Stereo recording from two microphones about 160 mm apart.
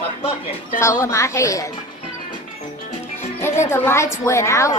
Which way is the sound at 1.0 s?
20° left (ahead or behind).